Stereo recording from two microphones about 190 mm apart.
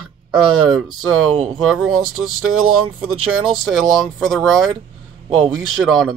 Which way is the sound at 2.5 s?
90° right.